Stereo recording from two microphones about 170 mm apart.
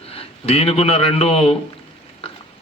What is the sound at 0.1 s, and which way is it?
A man's voice, 35° left (ahead or behind).